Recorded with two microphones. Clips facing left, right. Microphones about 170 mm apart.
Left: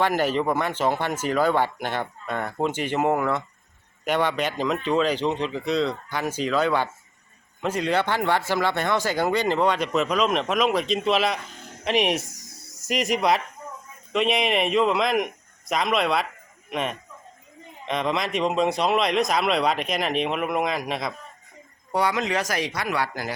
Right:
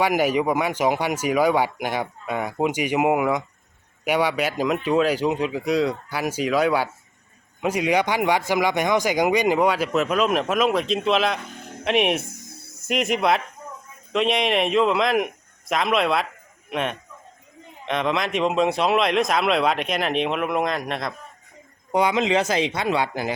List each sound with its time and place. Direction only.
0.0 s a man's voice: 10° right (ahead or behind)
12.2 s a sound: 55° right (ahead or behind)
12.9 s a man's voice: centre (ahead or behind)
21.9 s speech: 20° right (ahead or behind)